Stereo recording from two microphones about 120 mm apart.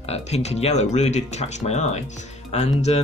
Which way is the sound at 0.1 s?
65° left (ahead or behind).